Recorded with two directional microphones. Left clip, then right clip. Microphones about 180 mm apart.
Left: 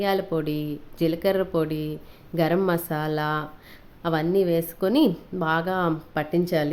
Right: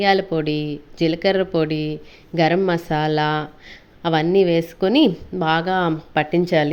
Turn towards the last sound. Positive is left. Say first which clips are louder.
# right 6 dB
turn(degrees=-15)  # may be behind; listen again after turning